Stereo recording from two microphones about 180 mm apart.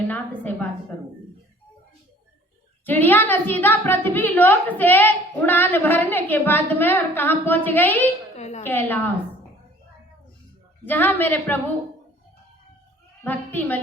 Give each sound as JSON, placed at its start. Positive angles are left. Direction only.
{"t": 0.1, "sound": "a sound", "side_deg": 10}
{"t": 2.8, "sound": "a woman's voice", "side_deg": 10}
{"t": 8.4, "sound": "a sound", "side_deg": 40}
{"t": 8.6, "sound": "a woman's voice", "side_deg": 10}
{"t": 10.8, "sound": "a woman's voice", "side_deg": 10}
{"t": 13.2, "sound": "a woman's voice", "side_deg": 10}